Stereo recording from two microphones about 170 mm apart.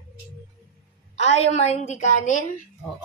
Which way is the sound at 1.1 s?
40° left (ahead or behind).